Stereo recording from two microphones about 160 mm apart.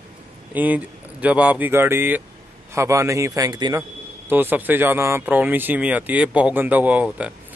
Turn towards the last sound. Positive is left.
turn(degrees=-10)  # may be behind; listen again after turning